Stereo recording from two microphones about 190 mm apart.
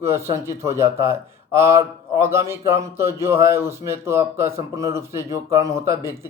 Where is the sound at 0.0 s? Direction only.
15° right (ahead or behind).